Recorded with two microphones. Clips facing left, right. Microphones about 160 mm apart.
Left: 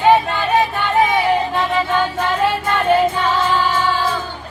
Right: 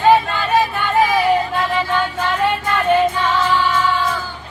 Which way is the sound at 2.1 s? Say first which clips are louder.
Left 1 dB; 30° left (ahead or behind).